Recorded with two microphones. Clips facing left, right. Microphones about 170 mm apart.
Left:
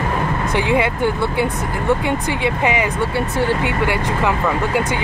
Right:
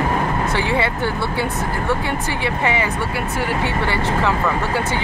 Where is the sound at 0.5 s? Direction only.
15° left (ahead or behind).